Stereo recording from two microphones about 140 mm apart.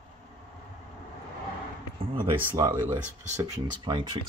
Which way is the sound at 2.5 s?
20° right (ahead or behind).